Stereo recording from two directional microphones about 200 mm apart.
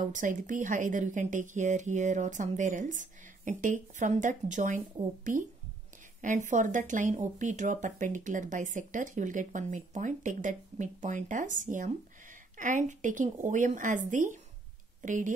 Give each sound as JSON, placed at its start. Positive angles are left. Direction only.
{"t": 0.0, "sound": "speech", "side_deg": -40}